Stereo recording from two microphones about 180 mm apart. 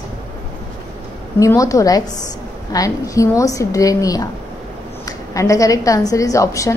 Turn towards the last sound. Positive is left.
turn(degrees=15)  # may be behind; listen again after turning